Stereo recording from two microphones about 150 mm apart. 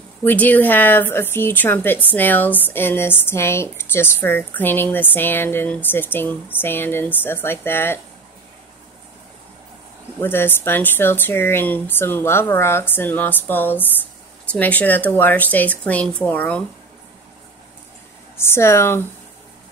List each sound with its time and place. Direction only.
0.2 s speech: 10° left (ahead or behind)
10.2 s speech: 15° left (ahead or behind)
18.4 s speech: 15° left (ahead or behind)